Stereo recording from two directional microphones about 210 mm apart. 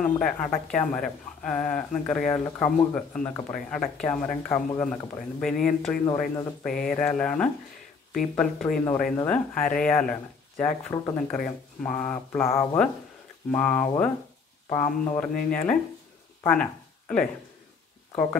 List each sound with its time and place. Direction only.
0.0 s speech: 5° left (ahead or behind)